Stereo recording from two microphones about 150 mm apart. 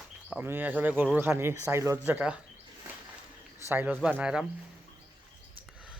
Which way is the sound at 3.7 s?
15° right (ahead or behind).